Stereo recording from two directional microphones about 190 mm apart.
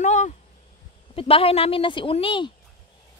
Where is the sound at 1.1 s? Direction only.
30° left (ahead or behind).